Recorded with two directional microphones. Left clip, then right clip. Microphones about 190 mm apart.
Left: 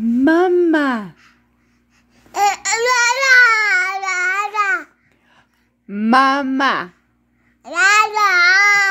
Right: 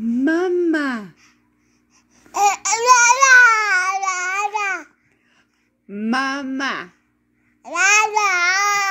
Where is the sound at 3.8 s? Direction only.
40° left (ahead or behind).